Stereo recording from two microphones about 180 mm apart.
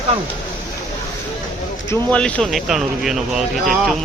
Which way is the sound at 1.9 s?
5° left (ahead or behind).